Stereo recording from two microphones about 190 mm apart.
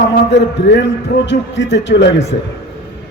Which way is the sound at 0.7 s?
70° left (ahead or behind).